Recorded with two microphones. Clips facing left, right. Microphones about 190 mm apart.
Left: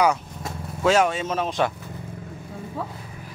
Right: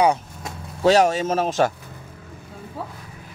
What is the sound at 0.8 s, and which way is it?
Speech, 40° right (ahead or behind).